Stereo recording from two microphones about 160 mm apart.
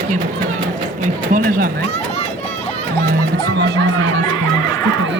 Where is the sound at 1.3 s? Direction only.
60° right (ahead or behind).